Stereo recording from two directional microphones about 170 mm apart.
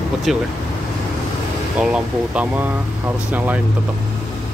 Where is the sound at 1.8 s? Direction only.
5° right (ahead or behind).